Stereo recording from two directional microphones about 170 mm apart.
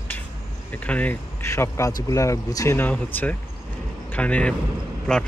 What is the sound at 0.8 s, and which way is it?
Speech, 10° left (ahead or behind).